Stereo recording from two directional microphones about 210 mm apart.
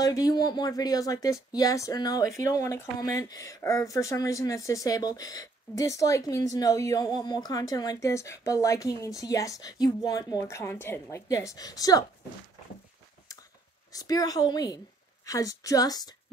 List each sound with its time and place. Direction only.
0.0 s speech: 15° left (ahead or behind)
13.9 s speech: 15° left (ahead or behind)